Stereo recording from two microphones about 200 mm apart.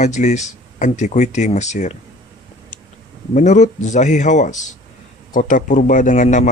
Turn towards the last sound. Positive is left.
turn(degrees=40)  # may be behind; listen again after turning